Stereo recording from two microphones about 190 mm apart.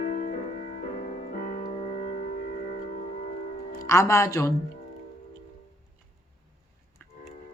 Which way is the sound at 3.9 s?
15° left (ahead or behind).